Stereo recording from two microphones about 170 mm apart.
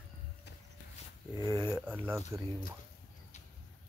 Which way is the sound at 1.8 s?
10° right (ahead or behind).